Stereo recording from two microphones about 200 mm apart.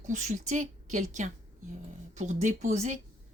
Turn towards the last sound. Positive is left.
turn(degrees=-35)  # may be behind; listen again after turning